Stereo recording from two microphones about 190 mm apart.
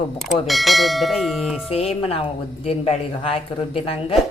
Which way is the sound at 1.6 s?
30° left (ahead or behind).